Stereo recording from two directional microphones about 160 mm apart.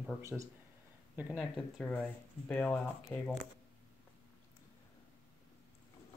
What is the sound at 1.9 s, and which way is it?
Speech, 10° left (ahead or behind).